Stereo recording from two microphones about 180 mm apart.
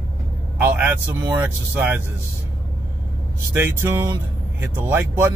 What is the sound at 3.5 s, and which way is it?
Speech, 10° right (ahead or behind).